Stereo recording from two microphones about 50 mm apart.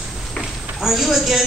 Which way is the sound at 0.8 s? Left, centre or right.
Centre.